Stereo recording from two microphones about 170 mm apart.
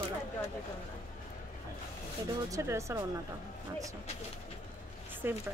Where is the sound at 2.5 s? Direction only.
15° right (ahead or behind).